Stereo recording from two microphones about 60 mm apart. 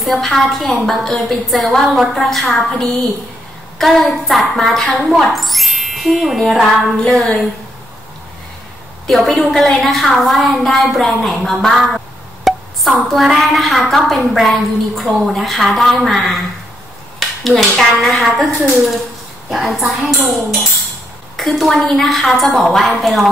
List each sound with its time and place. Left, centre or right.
0.0 s a woman's voice: centre
9.0 s a woman's voice: centre
12.5 s a sound: centre
13.1 s a woman's voice: centre
17.2 s a sound: centre
18.0 s a woman's voice: centre
21.4 s a woman's voice: centre